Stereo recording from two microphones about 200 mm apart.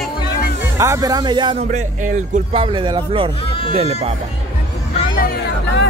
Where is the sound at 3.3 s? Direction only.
25° left (ahead or behind).